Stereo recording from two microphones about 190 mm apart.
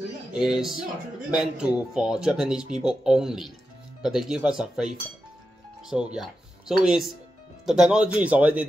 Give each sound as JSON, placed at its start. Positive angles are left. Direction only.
{"t": 0.3, "sound": "speech", "side_deg": -5}